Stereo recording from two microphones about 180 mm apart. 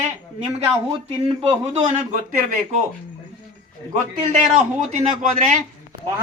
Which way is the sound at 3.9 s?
45° right (ahead or behind).